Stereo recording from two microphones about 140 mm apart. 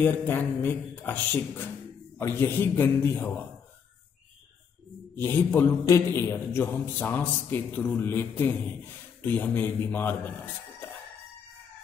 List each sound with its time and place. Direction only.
0.0 s a man's voice: 15° left (ahead or behind)
5.1 s a man's voice: 15° left (ahead or behind)